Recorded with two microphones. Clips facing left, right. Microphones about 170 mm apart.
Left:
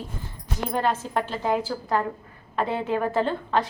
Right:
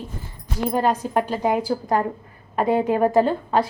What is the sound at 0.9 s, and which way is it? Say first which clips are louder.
Speech: right 5 dB; 15° right (ahead or behind).